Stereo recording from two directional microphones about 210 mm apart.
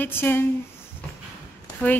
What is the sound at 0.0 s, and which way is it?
Speech, 10° left (ahead or behind).